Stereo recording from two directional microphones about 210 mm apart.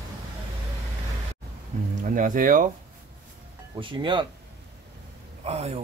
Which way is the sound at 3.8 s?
25° right (ahead or behind).